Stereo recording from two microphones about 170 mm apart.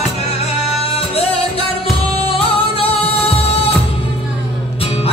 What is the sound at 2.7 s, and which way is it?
Music, 35° left (ahead or behind).